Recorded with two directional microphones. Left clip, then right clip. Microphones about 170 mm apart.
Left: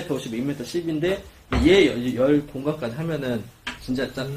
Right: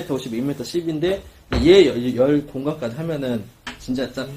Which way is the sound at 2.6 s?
20° right (ahead or behind).